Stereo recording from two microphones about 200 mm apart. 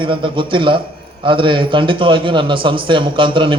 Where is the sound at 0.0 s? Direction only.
25° right (ahead or behind).